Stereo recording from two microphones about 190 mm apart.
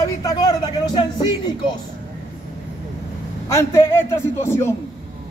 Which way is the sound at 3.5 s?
15° left (ahead or behind).